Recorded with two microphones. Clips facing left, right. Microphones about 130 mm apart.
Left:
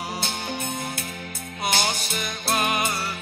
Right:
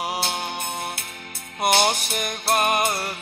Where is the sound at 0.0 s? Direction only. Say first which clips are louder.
Right 4 dB; 65° right (ahead or behind).